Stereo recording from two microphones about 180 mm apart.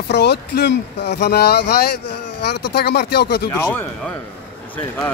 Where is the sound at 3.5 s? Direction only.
15° left (ahead or behind).